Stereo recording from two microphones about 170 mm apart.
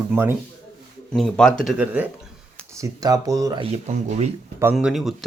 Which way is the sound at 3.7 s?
40° right (ahead or behind).